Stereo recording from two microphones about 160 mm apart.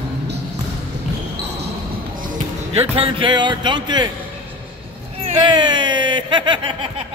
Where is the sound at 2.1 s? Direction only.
55° right (ahead or behind).